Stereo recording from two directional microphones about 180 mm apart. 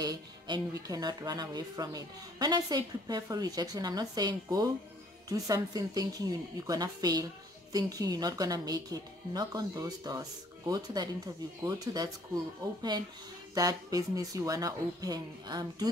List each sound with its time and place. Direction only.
0.0 s speech: 20° right (ahead or behind)